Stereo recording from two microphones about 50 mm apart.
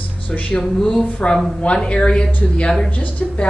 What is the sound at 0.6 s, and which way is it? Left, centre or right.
Speech, centre.